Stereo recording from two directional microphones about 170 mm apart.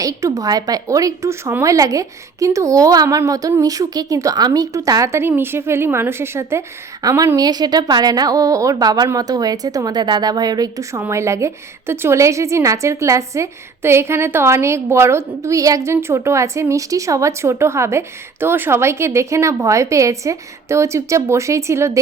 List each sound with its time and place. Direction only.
0.0 s speech: 20° right (ahead or behind)